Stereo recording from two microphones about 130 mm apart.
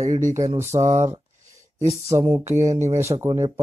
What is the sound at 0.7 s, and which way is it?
Speech, 20° right (ahead or behind).